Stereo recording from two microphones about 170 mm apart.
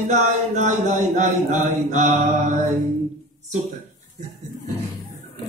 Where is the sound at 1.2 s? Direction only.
45° right (ahead or behind).